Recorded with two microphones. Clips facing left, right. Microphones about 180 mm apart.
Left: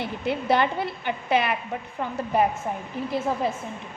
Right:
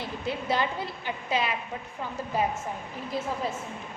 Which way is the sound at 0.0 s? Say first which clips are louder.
Left 5 dB; 65° left (ahead or behind).